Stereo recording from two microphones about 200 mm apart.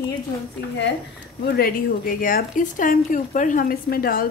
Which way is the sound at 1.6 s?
45° left (ahead or behind).